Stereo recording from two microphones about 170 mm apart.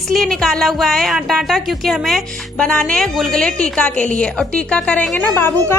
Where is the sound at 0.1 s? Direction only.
Centre (ahead or behind).